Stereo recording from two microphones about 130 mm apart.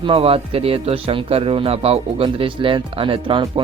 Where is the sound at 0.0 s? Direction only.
45° right (ahead or behind).